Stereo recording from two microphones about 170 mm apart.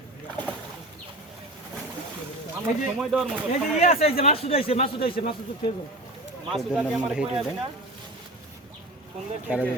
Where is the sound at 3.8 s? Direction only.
40° left (ahead or behind).